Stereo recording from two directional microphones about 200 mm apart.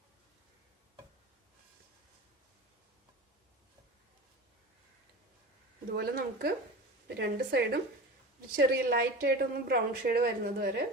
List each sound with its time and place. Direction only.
5.9 s a woman's voice: 50° right (ahead or behind)